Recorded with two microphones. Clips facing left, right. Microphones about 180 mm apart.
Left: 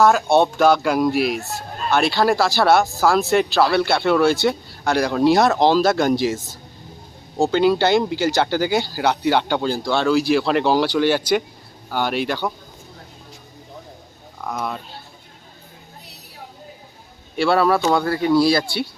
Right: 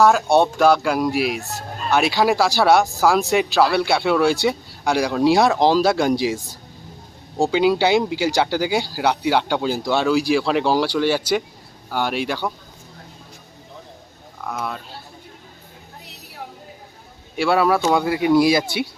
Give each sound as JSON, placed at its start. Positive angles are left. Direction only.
{"t": 0.0, "sound": "speech", "side_deg": 0}
{"t": 3.2, "sound": "speech", "side_deg": 0}
{"t": 14.4, "sound": "speech", "side_deg": 0}
{"t": 17.3, "sound": "speech", "side_deg": -10}